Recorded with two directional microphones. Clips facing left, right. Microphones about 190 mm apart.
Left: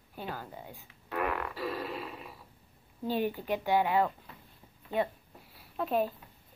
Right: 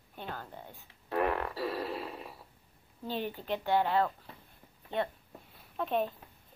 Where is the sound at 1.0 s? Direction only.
35° right (ahead or behind).